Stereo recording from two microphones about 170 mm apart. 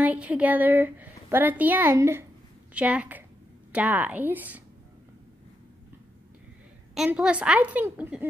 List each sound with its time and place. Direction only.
0.0 s a woman's voice: 10° right (ahead or behind)
7.0 s a woman's voice: 5° right (ahead or behind)